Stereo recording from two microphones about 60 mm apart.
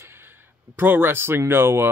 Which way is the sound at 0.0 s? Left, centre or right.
Right.